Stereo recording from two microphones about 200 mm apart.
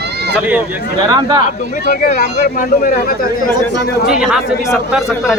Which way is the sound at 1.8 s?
45° left (ahead or behind).